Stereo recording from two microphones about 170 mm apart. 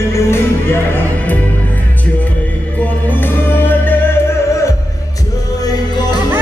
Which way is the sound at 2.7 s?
10° left (ahead or behind).